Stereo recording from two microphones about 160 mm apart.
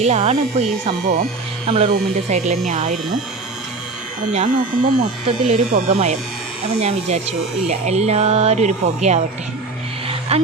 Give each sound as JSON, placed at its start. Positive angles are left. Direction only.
{"t": 0.0, "sound": "speech", "side_deg": -40}
{"t": 1.0, "sound": "speech", "side_deg": -75}
{"t": 1.6, "sound": "speech", "side_deg": -35}
{"t": 4.3, "sound": "speech", "side_deg": -45}
{"t": 10.1, "sound": "a sound", "side_deg": -40}